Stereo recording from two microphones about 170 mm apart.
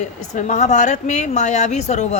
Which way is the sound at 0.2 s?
45° left (ahead or behind).